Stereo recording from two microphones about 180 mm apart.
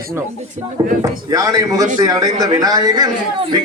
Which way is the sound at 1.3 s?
20° right (ahead or behind).